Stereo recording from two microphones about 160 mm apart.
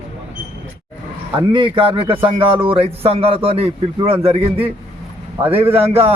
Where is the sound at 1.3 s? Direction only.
30° right (ahead or behind).